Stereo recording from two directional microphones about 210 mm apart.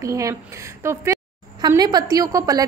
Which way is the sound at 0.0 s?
15° right (ahead or behind).